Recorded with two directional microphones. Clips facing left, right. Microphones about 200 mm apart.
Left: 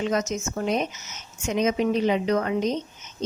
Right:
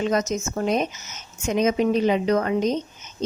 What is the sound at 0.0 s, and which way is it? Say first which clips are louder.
A woman's voice: right 2 dB; 40° right (ahead or behind).